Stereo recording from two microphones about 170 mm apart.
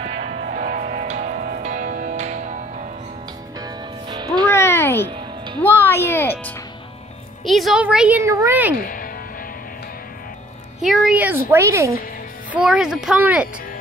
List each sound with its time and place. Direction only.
0.0 s music: 45° right (ahead or behind)
3.5 s music: 25° right (ahead or behind)
4.5 s a sound: 15° left (ahead or behind)
5.1 s music: 30° right (ahead or behind)
5.6 s music: 10° left (ahead or behind)
7.4 s speech: centre (ahead or behind)
8.2 s speech: 15° right (ahead or behind)
8.8 s music: 55° left (ahead or behind)
10.8 s speech: 5° right (ahead or behind)
12.4 s speech: 5° right (ahead or behind)